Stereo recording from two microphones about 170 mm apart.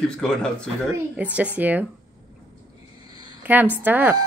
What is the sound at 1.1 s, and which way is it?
Speech, 10° right (ahead or behind).